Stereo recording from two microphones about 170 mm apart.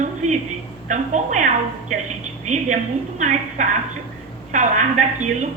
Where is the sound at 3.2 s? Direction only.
45° right (ahead or behind).